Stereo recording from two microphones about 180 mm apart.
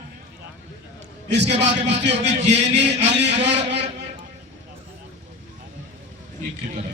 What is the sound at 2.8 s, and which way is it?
Speech, 70° right (ahead or behind).